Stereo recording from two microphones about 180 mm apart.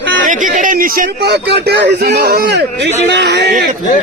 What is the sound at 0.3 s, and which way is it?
A man's voice, 45° right (ahead or behind).